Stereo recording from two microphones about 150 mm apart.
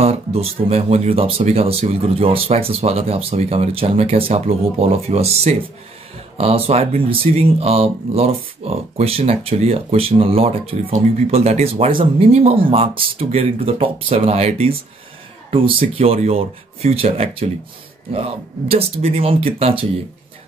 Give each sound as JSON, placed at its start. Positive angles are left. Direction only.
{"t": 0.0, "sound": "speech", "side_deg": -40}